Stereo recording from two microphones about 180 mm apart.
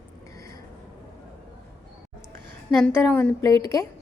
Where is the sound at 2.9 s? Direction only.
10° left (ahead or behind).